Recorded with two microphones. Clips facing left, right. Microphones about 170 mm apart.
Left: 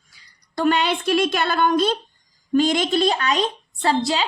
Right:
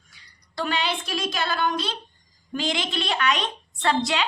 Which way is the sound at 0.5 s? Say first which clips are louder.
Left 7 dB; 50° left (ahead or behind).